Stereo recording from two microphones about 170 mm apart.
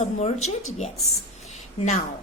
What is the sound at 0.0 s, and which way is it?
Speech, 40° left (ahead or behind).